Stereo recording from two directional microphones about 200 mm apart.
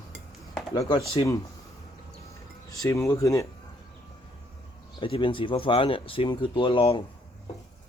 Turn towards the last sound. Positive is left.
turn(degrees=25)  # may be behind; listen again after turning